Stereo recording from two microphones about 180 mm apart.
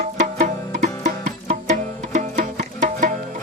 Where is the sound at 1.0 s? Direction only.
45° right (ahead or behind).